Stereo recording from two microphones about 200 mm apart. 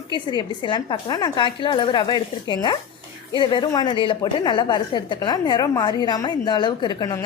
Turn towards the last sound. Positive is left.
turn(degrees=20)  # may be behind; listen again after turning